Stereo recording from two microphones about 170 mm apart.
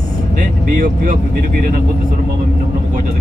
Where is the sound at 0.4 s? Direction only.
50° right (ahead or behind).